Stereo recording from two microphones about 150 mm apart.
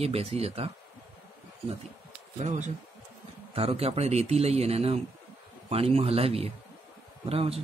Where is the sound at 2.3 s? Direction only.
55° right (ahead or behind).